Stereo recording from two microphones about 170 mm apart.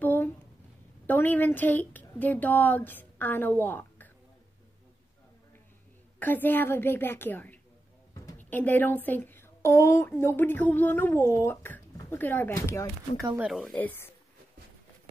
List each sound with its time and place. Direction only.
0.0 s a sound: 10° left (ahead or behind)
1.0 s speech: 10° left (ahead or behind)
6.1 s speech: 10° left (ahead or behind)
8.1 s a sound: 20° left (ahead or behind)
8.5 s speech: 10° left (ahead or behind)
13.4 s speech: centre (ahead or behind)
13.7 s speech: 10° left (ahead or behind)